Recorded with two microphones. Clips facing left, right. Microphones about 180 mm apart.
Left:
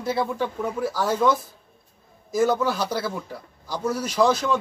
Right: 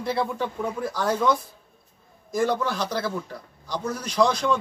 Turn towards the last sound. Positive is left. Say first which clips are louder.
# left 1 dB
turn(degrees=5)  # may be behind; listen again after turning